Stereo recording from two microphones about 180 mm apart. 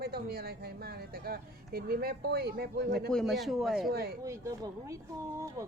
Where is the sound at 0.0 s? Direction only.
60° right (ahead or behind).